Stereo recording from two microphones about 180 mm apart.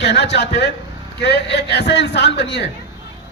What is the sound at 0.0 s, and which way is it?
A man's voice, 75° left (ahead or behind).